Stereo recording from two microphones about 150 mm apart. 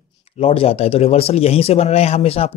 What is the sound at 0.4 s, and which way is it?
Speech, 40° left (ahead or behind).